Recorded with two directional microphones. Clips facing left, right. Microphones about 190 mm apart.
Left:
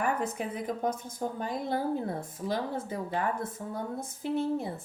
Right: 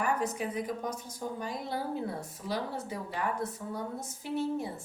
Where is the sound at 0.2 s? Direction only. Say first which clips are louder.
Even; 55° left (ahead or behind).